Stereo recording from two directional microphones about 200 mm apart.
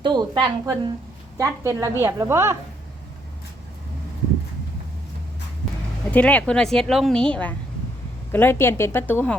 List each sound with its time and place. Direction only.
0.0 s a woman's voice: 20° right (ahead or behind)
6.1 s a woman's voice: 5° left (ahead or behind)